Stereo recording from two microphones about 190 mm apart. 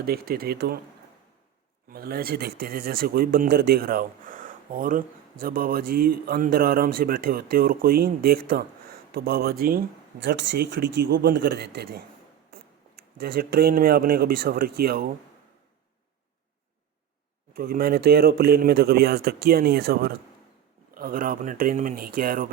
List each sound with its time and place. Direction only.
0.0 s speech: 50° right (ahead or behind)
1.9 s speech: 55° right (ahead or behind)
13.1 s speech: 55° right (ahead or behind)
17.5 s speech: 50° right (ahead or behind)